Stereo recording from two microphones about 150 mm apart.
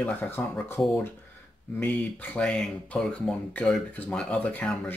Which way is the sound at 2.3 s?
5° left (ahead or behind).